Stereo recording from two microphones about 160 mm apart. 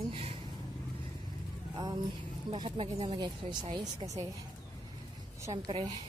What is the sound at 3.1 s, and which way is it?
Speech, 25° right (ahead or behind).